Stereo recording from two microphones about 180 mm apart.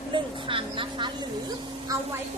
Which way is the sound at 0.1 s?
30° right (ahead or behind).